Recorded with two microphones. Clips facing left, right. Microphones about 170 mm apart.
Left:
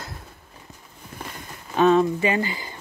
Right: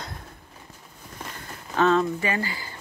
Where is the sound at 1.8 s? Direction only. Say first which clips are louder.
Left 4 dB; 15° left (ahead or behind).